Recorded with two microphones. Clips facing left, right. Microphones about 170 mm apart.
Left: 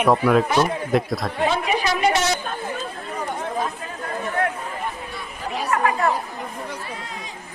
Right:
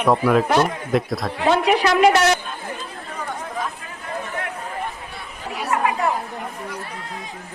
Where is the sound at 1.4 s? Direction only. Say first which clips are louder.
Right 5 dB; 70° right (ahead or behind).